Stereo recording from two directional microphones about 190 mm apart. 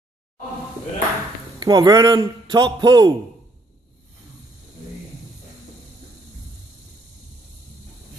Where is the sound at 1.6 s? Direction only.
20° right (ahead or behind).